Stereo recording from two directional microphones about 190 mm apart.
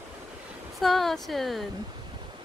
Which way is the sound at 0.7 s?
Centre (ahead or behind).